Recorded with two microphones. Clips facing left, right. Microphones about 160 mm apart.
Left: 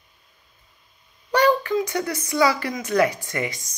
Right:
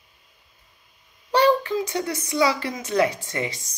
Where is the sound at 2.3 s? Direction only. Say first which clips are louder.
Left 2 dB; 25° right (ahead or behind).